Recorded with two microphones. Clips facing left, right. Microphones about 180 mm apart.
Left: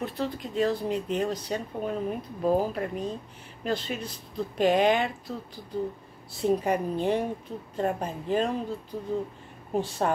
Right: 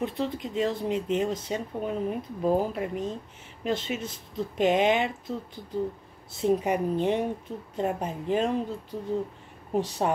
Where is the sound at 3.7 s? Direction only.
20° right (ahead or behind).